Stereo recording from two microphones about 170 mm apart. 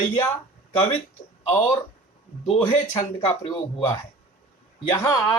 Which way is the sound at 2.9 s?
25° left (ahead or behind).